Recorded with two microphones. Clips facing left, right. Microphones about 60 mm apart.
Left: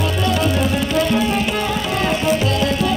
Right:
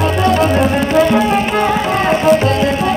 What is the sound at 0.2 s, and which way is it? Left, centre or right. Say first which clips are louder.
Music: right 6 dB; right.